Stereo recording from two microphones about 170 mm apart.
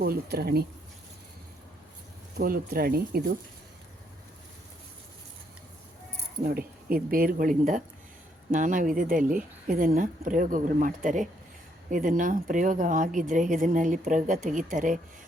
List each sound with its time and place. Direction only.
0.0 s speech: 65° right (ahead or behind)
2.4 s speech: 60° right (ahead or behind)
6.4 s speech: 60° right (ahead or behind)